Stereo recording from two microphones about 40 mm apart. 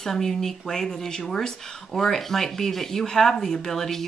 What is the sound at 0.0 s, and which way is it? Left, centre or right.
Speech, centre.